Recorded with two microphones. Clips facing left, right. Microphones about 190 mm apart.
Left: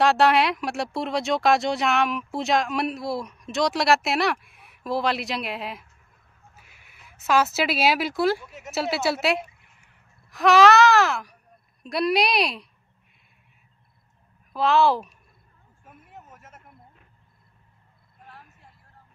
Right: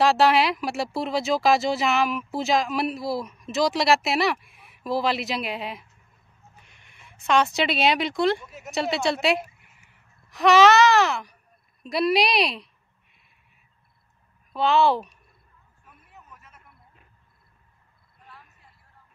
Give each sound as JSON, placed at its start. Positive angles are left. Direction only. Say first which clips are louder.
{"t": 0.0, "sound": "speech", "louder": "even", "side_deg": 0}
{"t": 14.5, "sound": "speech", "louder": "even", "side_deg": 0}
{"t": 15.8, "sound": "a sound", "louder": "left 6 dB", "side_deg": 50}